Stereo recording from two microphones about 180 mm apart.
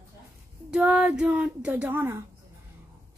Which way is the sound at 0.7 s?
5° right (ahead or behind).